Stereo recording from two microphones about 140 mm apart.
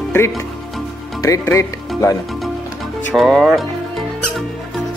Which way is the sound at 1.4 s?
20° left (ahead or behind).